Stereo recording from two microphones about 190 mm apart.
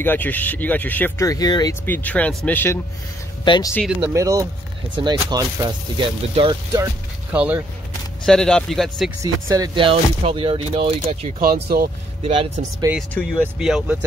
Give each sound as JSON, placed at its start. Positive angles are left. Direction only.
{"t": 0.0, "sound": "speech", "side_deg": 10}
{"t": 1.9, "sound": "speech", "side_deg": 10}
{"t": 3.4, "sound": "speech", "side_deg": 25}
{"t": 4.1, "sound": "speech", "side_deg": -15}
{"t": 7.3, "sound": "speech", "side_deg": -10}
{"t": 8.3, "sound": "speech", "side_deg": 5}
{"t": 9.2, "sound": "speech", "side_deg": -20}
{"t": 11.4, "sound": "speech", "side_deg": -55}
{"t": 12.2, "sound": "speech", "side_deg": -30}
{"t": 13.6, "sound": "speech", "side_deg": -5}